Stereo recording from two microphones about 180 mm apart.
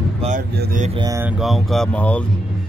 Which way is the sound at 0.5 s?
60° right (ahead or behind).